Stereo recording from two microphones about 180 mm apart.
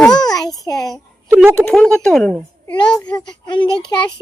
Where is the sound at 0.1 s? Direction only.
20° left (ahead or behind).